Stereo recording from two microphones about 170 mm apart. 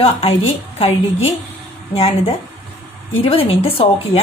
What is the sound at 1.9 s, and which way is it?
A woman's voice, 35° left (ahead or behind).